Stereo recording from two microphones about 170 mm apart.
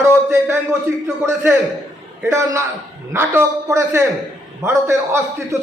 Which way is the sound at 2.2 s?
15° right (ahead or behind).